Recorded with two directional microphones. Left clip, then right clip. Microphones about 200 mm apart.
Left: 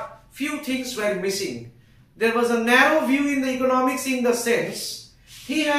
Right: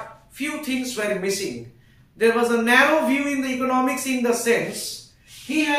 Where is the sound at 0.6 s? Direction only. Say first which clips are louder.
Right 2 dB; 15° right (ahead or behind).